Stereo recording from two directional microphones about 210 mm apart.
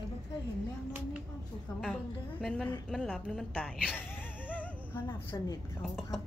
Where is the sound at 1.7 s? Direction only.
15° left (ahead or behind).